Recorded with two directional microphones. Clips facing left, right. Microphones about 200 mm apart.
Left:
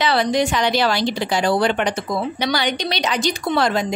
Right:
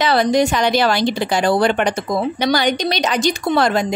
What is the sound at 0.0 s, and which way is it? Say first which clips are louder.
Speech: right 3 dB; 45° right (ahead or behind).